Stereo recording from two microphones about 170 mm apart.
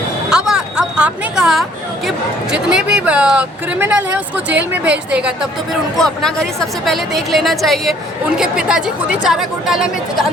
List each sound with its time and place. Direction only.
0.3 s a woman's voice: 5° right (ahead or behind)